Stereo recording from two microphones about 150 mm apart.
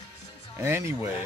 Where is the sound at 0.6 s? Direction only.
15° right (ahead or behind).